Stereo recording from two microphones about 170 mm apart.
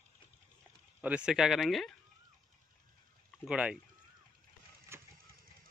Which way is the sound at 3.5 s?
5° right (ahead or behind).